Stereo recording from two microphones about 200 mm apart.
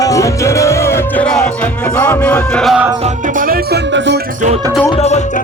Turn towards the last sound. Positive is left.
turn(degrees=35)  # may be behind; listen again after turning